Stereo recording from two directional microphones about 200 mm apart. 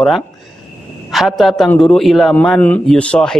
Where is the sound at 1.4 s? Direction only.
Centre (ahead or behind).